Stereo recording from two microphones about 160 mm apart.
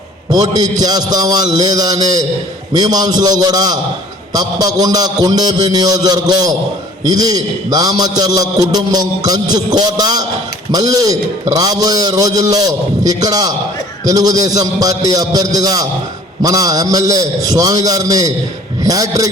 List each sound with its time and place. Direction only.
0.3 s a man's voice: 25° right (ahead or behind)